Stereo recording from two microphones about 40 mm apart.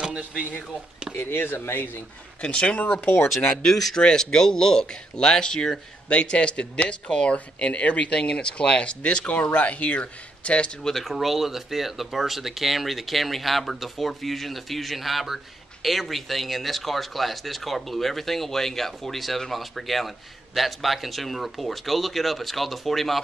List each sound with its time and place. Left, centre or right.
1.1 s speech: left
2.4 s speech: left
3.6 s speech: centre; by 10.7 s left
10.8 s speech: centre